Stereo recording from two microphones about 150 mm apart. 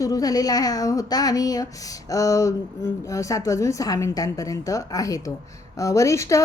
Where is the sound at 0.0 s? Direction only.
25° left (ahead or behind).